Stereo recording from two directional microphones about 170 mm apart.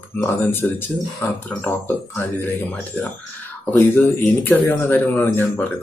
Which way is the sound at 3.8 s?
15° left (ahead or behind).